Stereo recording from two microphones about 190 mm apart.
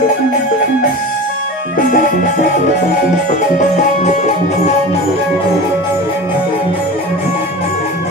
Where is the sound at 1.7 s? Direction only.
45° left (ahead or behind).